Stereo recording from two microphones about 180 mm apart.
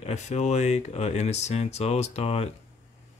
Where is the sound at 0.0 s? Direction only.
40° left (ahead or behind).